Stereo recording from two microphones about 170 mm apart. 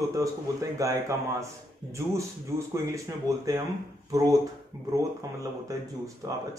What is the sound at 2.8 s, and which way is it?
Speech, 20° right (ahead or behind).